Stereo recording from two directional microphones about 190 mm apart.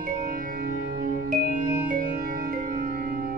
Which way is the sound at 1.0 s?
50° right (ahead or behind).